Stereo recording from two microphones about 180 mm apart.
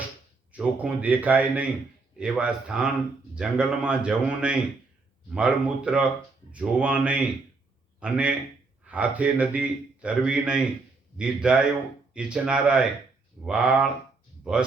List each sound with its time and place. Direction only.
0.5 s a man's voice: 10° right (ahead or behind)